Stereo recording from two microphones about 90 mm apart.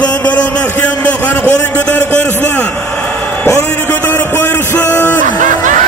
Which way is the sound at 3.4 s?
25° left (ahead or behind).